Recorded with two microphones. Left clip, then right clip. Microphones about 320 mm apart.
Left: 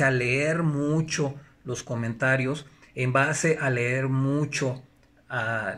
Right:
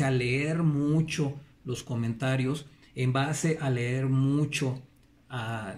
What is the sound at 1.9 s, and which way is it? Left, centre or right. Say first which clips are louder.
Speech: left 8 dB; centre.